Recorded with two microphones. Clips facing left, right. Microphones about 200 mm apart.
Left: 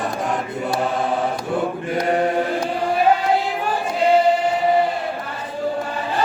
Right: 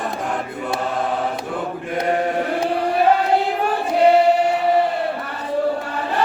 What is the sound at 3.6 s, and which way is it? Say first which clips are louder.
Choir: right 5 dB; 65° right (ahead or behind).